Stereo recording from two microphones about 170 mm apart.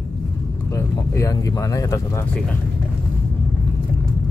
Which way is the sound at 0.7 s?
15° left (ahead or behind).